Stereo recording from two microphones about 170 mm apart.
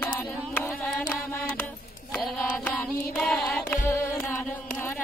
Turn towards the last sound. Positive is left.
turn(degrees=5)  # may be behind; listen again after turning